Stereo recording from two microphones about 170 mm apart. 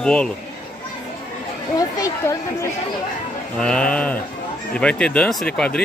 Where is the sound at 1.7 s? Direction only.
20° left (ahead or behind).